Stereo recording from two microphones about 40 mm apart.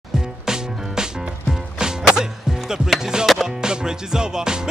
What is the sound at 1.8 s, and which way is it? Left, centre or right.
Music, centre.